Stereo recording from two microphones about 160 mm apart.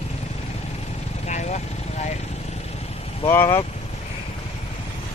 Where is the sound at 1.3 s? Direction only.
45° left (ahead or behind).